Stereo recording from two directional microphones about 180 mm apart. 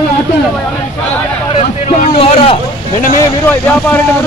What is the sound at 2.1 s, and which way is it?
Speech, 30° left (ahead or behind).